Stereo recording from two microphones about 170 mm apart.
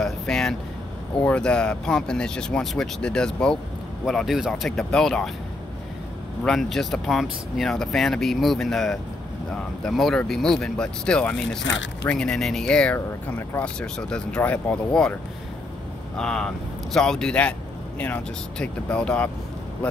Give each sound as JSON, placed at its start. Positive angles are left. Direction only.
{"t": 0.0, "sound": "vehicle", "side_deg": 5}
{"t": 1.2, "sound": "speech", "side_deg": 5}
{"t": 6.4, "sound": "speech", "side_deg": 0}
{"t": 11.6, "sound": "speech", "side_deg": 90}
{"t": 12.1, "sound": "speech", "side_deg": 5}
{"t": 16.2, "sound": "speech", "side_deg": 5}